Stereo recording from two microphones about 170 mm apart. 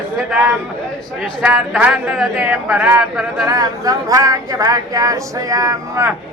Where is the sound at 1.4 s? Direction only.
5° right (ahead or behind).